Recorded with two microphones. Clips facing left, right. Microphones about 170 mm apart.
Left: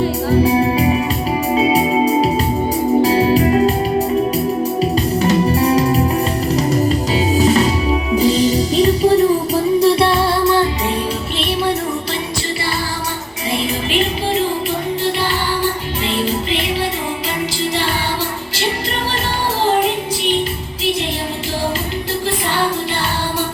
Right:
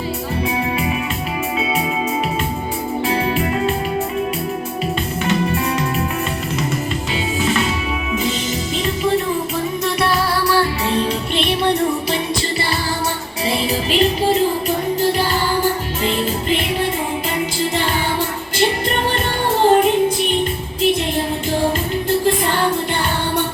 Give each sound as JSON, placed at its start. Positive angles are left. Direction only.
{"t": 0.4, "sound": "music", "side_deg": 35}
{"t": 5.2, "sound": "music", "side_deg": 35}
{"t": 7.3, "sound": "music", "side_deg": 40}
{"t": 11.3, "sound": "music", "side_deg": 5}